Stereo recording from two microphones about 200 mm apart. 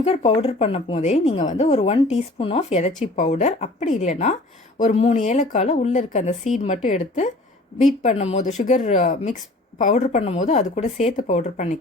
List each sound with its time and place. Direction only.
0.0 s a woman's voice: 30° left (ahead or behind)